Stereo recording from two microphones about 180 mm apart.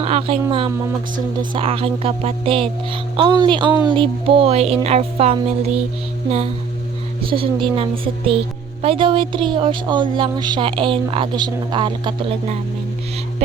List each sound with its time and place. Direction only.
0.0 s speech: 35° right (ahead or behind)
7.3 s speech: 30° right (ahead or behind)